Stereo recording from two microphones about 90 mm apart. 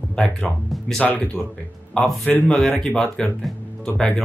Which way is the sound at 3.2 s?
10° left (ahead or behind).